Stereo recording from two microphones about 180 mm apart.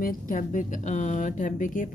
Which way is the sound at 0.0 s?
50° left (ahead or behind).